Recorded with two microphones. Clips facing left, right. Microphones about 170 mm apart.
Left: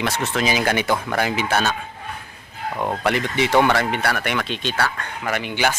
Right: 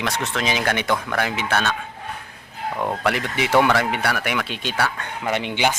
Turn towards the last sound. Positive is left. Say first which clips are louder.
# right 1 dB
turn(degrees=-20)  # may be behind; listen again after turning